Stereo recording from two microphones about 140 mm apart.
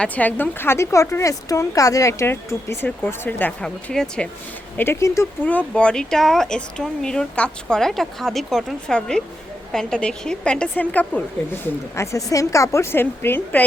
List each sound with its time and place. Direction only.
0.0 s a woman's voice: 10° left (ahead or behind)
4.8 s a woman's voice: 20° left (ahead or behind)